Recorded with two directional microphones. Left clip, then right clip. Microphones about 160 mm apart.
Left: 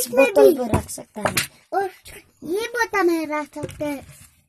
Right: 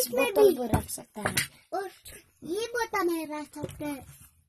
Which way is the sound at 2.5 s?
25° left (ahead or behind).